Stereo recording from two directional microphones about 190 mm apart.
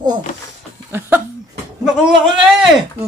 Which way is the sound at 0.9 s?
10° right (ahead or behind).